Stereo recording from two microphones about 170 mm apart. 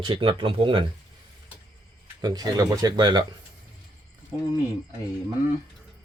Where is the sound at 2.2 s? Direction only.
25° right (ahead or behind).